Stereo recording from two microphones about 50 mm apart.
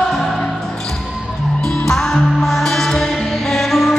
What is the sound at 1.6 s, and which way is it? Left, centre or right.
Music, centre.